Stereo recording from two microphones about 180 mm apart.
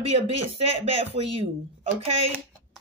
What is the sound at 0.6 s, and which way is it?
Speech, 35° right (ahead or behind).